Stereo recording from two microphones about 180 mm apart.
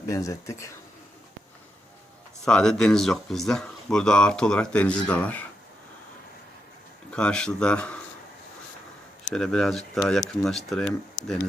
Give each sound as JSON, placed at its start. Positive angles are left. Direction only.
{"t": 0.1, "sound": "speech", "side_deg": 15}
{"t": 2.4, "sound": "speech", "side_deg": 5}
{"t": 7.1, "sound": "speech", "side_deg": 5}
{"t": 9.3, "sound": "speech", "side_deg": 0}